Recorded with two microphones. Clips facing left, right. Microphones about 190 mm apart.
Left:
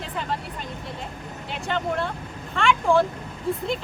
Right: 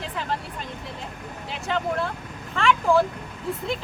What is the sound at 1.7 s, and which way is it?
Speech, centre (ahead or behind).